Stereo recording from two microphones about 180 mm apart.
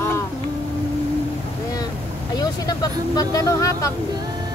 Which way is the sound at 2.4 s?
20° left (ahead or behind).